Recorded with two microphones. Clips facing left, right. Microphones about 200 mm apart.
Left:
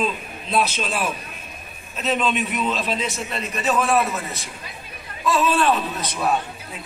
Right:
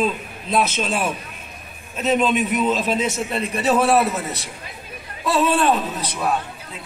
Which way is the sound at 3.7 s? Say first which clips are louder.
Right 3 dB; 35° right (ahead or behind).